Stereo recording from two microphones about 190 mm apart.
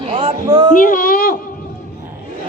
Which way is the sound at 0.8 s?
45° left (ahead or behind).